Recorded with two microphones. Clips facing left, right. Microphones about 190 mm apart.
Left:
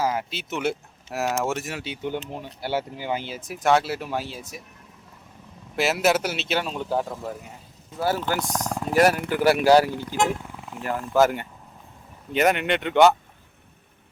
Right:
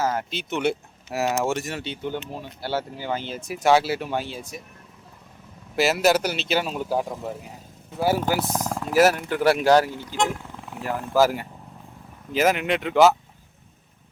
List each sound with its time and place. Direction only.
0.0 s speech: 10° left (ahead or behind)
2.3 s speech: 15° left (ahead or behind); by 4.6 s centre (ahead or behind)
5.7 s speech: centre (ahead or behind); by 10.3 s 15° left (ahead or behind)
10.8 s speech: centre (ahead or behind)